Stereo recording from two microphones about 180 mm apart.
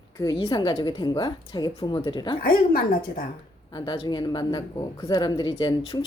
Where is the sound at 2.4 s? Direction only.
55° left (ahead or behind).